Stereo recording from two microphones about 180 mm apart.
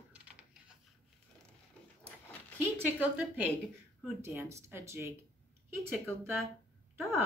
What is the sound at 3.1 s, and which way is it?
Speech, 10° right (ahead or behind).